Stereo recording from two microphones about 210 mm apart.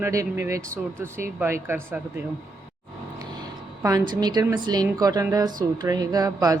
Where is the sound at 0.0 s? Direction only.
15° right (ahead or behind).